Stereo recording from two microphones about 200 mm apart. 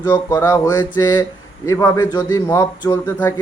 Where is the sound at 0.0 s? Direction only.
20° left (ahead or behind).